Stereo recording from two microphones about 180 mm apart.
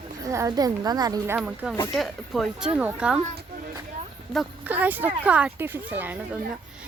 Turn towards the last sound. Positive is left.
turn(degrees=-10)  # may be behind; listen again after turning